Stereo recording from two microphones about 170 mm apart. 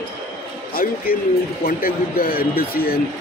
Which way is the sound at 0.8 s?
55° left (ahead or behind).